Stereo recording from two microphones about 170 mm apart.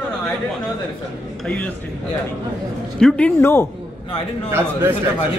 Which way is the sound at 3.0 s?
5° left (ahead or behind).